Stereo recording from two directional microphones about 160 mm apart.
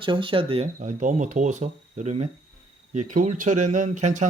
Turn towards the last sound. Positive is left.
turn(degrees=-50)  # may be behind; listen again after turning